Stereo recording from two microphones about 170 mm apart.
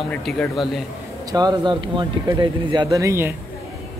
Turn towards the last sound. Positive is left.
turn(degrees=-15)  # may be behind; listen again after turning